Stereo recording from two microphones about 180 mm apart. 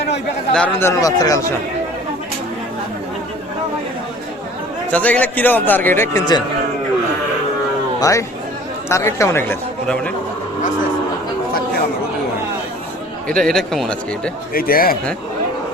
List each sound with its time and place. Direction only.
0.5 s a man's voice: 10° left (ahead or behind)
4.9 s a man's voice: 10° left (ahead or behind)
7.9 s a man's voice: 20° left (ahead or behind)
13.2 s a man's voice: 5° left (ahead or behind)
14.5 s speech: 55° left (ahead or behind)